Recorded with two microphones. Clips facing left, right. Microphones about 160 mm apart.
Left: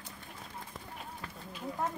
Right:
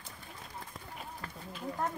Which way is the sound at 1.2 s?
Centre (ahead or behind).